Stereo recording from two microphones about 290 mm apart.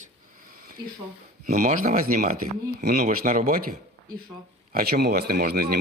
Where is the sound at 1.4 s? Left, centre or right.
Right.